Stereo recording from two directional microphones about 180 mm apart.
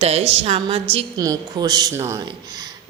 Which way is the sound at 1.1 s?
20° right (ahead or behind).